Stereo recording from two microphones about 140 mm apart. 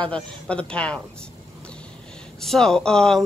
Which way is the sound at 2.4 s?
5° left (ahead or behind).